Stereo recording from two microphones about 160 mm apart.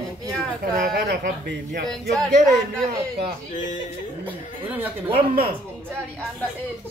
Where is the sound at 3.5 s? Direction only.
50° left (ahead or behind).